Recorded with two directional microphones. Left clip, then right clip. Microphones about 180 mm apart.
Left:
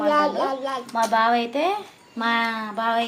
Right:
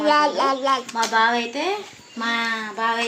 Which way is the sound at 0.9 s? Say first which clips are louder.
Left 3 dB; 40° left (ahead or behind).